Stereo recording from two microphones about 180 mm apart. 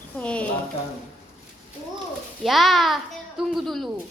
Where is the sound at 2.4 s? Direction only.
Centre (ahead or behind).